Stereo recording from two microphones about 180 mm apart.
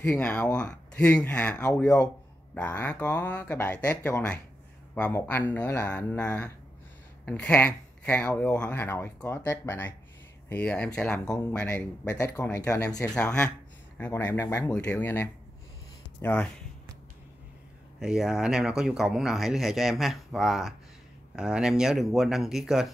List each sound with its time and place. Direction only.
0.0 s speech: 10° left (ahead or behind)
18.0 s speech: 5° right (ahead or behind)